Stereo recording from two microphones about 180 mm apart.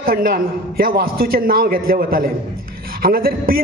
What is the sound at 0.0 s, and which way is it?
A man's voice, 55° right (ahead or behind).